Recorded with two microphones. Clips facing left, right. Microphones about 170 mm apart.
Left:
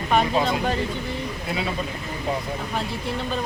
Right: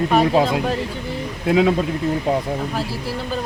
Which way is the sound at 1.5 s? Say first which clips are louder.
Right 13 dB; 75° right (ahead or behind).